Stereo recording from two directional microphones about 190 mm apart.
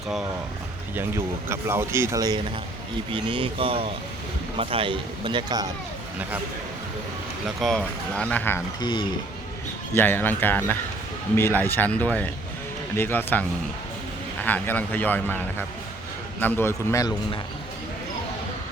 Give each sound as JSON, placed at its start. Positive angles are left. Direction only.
{"t": 0.9, "sound": "speech", "side_deg": -15}
{"t": 7.4, "sound": "speech", "side_deg": 0}
{"t": 8.8, "sound": "speech", "side_deg": 25}
{"t": 9.9, "sound": "speech", "side_deg": 10}